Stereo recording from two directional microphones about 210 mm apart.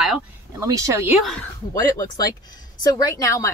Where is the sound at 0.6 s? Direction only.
15° right (ahead or behind).